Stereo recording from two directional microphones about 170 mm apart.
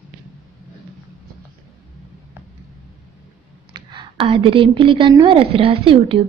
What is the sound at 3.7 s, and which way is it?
A woman's voice, 30° right (ahead or behind).